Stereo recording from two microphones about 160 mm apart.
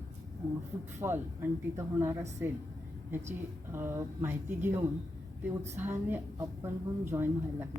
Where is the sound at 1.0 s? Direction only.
15° right (ahead or behind).